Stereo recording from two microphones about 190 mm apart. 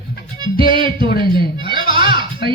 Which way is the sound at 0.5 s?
50° left (ahead or behind).